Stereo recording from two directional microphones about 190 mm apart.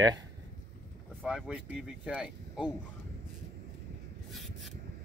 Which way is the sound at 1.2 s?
5° right (ahead or behind).